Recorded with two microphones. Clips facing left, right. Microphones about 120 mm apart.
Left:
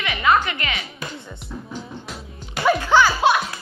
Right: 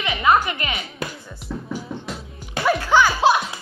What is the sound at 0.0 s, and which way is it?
Music, 25° right (ahead or behind).